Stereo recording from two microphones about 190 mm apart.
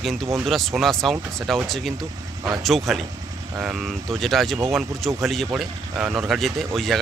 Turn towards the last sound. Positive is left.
turn(degrees=0)  # may be behind; listen again after turning